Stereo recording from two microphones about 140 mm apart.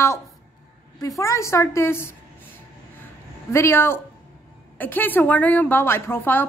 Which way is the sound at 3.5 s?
20° left (ahead or behind).